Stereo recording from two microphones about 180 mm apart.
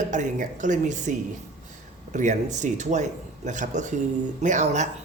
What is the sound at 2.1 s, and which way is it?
Speech, 40° right (ahead or behind).